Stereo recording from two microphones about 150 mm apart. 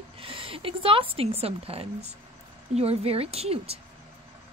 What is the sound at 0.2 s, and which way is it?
Speech, 35° right (ahead or behind).